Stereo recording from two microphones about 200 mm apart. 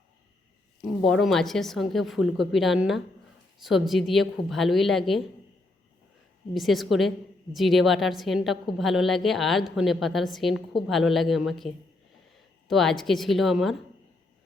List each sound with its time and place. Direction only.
1.0 s a woman's voice: centre (ahead or behind)
6.5 s a woman's voice: centre (ahead or behind)